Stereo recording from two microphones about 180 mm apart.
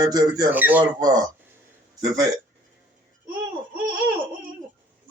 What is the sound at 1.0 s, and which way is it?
Speech, 20° right (ahead or behind).